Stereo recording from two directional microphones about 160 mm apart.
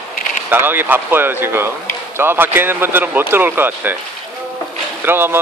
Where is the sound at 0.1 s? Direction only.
55° left (ahead or behind).